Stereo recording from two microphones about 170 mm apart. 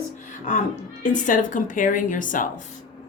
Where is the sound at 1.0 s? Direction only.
50° left (ahead or behind).